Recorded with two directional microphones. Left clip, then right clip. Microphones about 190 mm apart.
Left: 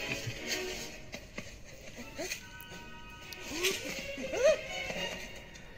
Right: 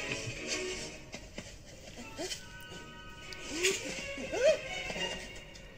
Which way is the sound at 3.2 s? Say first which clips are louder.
Right 1 dB; 25° left (ahead or behind).